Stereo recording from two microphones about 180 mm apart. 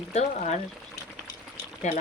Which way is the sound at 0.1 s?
40° left (ahead or behind).